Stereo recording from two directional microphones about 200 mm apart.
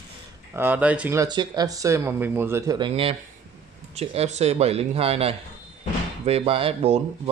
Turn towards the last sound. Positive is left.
turn(degrees=-30)  # may be behind; listen again after turning